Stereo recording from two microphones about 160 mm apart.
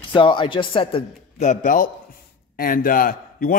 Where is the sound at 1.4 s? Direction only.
50° left (ahead or behind).